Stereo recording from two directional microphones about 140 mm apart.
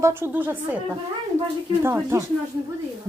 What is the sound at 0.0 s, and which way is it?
Speech, 15° right (ahead or behind).